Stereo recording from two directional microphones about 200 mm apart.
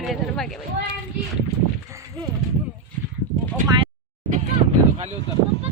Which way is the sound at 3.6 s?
25° right (ahead or behind).